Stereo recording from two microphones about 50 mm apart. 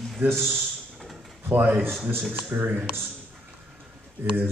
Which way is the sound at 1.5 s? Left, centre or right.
Right.